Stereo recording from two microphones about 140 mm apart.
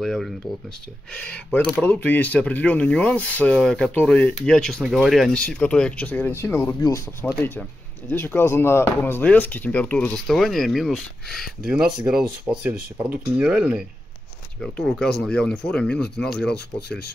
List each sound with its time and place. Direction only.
0.0 s speech: centre (ahead or behind)
14.6 s speech: 5° left (ahead or behind)